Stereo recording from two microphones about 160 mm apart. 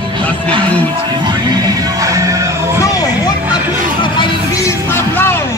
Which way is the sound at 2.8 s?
20° left (ahead or behind).